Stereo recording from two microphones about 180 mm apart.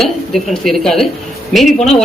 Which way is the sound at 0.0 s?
Centre (ahead or behind).